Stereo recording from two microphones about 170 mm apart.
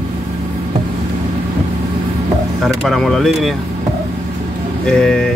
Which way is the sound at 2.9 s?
Centre (ahead or behind).